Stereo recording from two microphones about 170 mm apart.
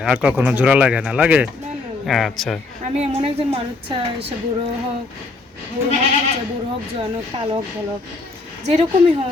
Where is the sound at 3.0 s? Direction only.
35° right (ahead or behind).